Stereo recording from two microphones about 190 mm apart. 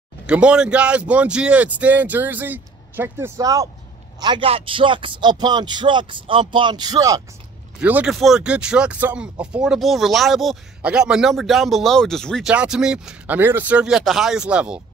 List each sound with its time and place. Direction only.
0.3 s speech: 5° right (ahead or behind)
7.8 s speech: 5° right (ahead or behind)